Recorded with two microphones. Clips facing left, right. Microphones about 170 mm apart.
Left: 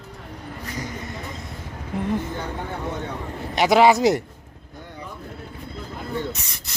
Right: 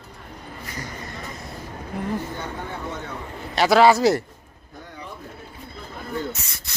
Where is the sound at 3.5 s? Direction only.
15° left (ahead or behind).